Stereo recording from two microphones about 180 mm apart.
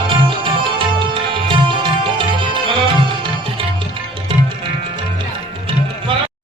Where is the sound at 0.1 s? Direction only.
30° right (ahead or behind).